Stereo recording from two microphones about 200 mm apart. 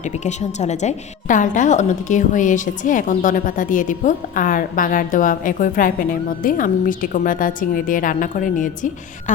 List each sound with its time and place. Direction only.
0.0 s a woman's voice: 35° left (ahead or behind)